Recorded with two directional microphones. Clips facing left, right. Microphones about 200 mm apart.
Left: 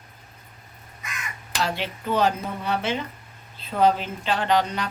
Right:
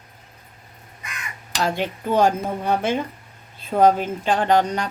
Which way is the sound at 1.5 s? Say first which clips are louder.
Right 4 dB; 50° right (ahead or behind).